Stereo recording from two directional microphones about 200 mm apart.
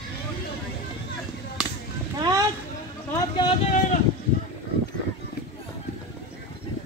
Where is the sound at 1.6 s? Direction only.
5° right (ahead or behind).